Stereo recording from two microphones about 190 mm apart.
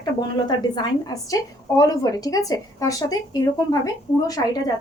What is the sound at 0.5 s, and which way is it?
Speech, 25° left (ahead or behind).